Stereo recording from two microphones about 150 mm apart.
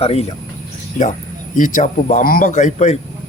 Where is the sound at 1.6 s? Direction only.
60° left (ahead or behind).